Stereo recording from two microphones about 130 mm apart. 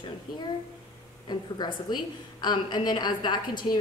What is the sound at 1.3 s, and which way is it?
A woman's voice, 35° left (ahead or behind).